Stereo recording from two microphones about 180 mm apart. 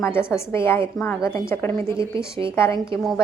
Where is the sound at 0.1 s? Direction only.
15° left (ahead or behind).